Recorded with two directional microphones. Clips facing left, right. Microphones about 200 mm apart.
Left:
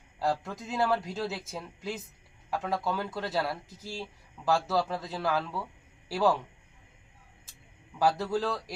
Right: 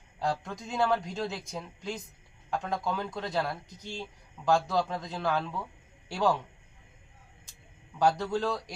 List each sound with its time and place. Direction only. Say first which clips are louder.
0.2 s speech: left 2 dB; 5° left (ahead or behind)
7.9 s speech: even; 5° left (ahead or behind)